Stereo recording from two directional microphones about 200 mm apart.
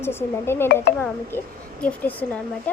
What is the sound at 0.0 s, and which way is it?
Speech, 10° left (ahead or behind).